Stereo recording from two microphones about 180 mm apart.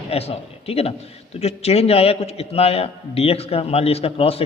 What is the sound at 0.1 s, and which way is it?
A man's voice, 35° left (ahead or behind).